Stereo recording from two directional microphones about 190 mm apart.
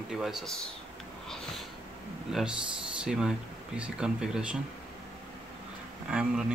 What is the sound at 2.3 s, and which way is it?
Speech, centre (ahead or behind).